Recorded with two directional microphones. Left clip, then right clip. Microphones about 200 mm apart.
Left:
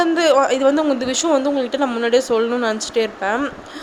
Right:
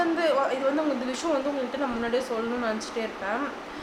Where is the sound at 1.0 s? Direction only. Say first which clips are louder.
Left 10 dB; 45° left (ahead or behind).